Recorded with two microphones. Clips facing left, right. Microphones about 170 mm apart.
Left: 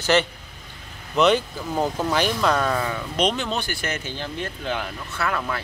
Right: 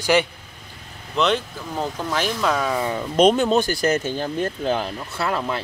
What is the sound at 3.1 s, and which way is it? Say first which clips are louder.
Speech: right 9 dB; 45° right (ahead or behind).